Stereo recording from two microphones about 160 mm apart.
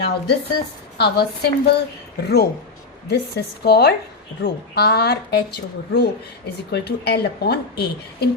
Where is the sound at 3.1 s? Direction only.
85° left.